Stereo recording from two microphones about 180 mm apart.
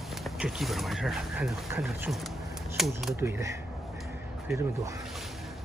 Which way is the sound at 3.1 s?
15° right (ahead or behind).